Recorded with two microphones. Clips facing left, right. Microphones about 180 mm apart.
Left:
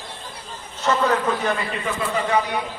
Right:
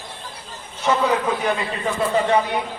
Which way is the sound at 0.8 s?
10° right (ahead or behind).